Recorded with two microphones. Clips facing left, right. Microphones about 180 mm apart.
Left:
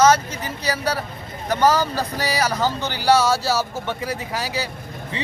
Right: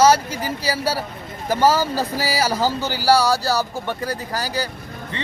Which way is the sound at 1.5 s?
30° right (ahead or behind).